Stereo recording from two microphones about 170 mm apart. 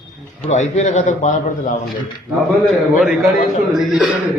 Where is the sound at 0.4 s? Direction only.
45° left (ahead or behind).